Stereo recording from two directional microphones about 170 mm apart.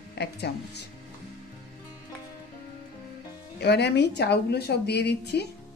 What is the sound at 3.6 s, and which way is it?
A woman's voice, 80° left.